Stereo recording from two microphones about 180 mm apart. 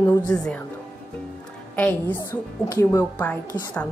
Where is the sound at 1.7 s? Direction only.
10° left (ahead or behind).